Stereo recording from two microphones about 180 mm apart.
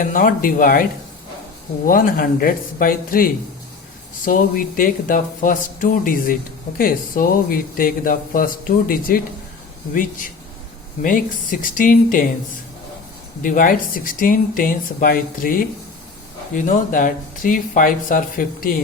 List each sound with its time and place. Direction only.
0.0 s speech: 45° left (ahead or behind)
1.9 s speech: 55° left (ahead or behind)
13.4 s speech: 50° left (ahead or behind)